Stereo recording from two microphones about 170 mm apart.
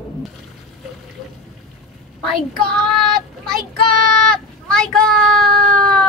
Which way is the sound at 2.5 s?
Centre (ahead or behind).